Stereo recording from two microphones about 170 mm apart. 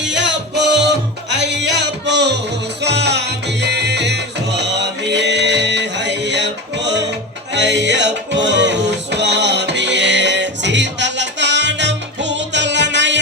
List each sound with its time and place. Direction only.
0.1 s music: 90° right